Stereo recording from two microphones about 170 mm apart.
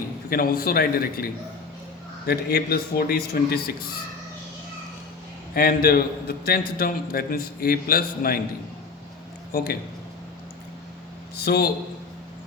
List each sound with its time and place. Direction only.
0.3 s a man's voice: 60° left (ahead or behind)
5.5 s a man's voice: 60° left (ahead or behind)
9.5 s speech: 60° left (ahead or behind)
11.3 s a man's voice: 65° left (ahead or behind)